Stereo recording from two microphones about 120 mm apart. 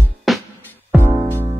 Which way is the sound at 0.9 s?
20° right (ahead or behind).